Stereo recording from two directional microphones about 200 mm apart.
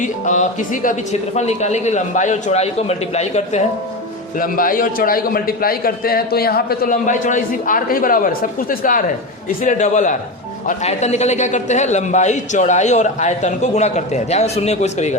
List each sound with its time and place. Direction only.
0.0 s a man's voice: 40° left (ahead or behind)
4.4 s a man's voice: 45° left (ahead or behind)